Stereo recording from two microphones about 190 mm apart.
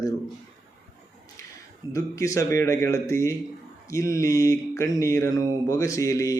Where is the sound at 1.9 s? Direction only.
15° left (ahead or behind).